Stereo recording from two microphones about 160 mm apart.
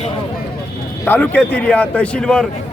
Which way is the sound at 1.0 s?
10° left (ahead or behind).